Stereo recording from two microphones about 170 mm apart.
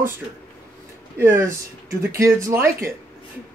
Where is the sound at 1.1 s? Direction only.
15° right (ahead or behind).